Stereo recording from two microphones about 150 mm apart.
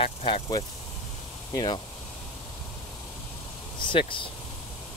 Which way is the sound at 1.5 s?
25° left (ahead or behind).